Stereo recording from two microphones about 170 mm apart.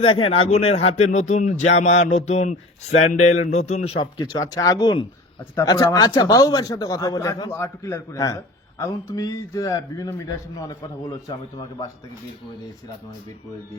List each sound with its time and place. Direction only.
0.0 s speech: 30° left (ahead or behind)